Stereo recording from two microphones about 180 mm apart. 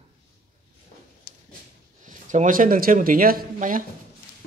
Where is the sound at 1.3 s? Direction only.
55° left (ahead or behind).